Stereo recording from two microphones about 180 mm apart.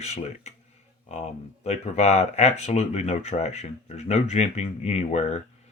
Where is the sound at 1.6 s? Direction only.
40° left (ahead or behind).